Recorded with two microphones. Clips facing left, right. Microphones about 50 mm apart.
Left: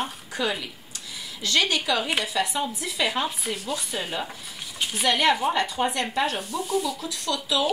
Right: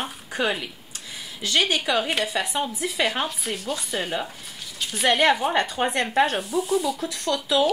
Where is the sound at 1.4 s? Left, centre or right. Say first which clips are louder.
Right 1 dB; right.